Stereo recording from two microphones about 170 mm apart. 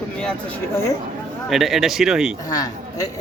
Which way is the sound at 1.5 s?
Centre (ahead or behind).